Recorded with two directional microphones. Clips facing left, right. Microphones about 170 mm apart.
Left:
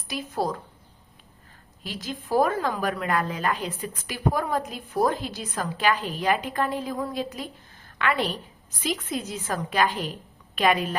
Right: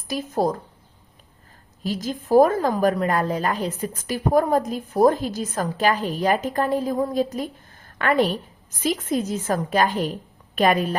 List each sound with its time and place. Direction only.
0.1 s a woman's voice: 45° right (ahead or behind)
1.8 s a woman's voice: 40° right (ahead or behind)